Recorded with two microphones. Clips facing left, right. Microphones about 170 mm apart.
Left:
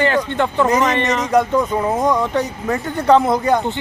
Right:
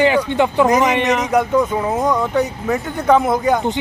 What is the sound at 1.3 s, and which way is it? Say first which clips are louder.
Speech: left 2 dB; centre (ahead or behind).